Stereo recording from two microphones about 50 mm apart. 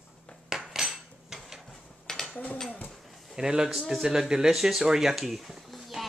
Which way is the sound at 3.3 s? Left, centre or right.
Centre.